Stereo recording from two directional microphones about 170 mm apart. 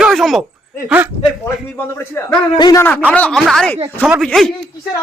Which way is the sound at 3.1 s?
5° left (ahead or behind).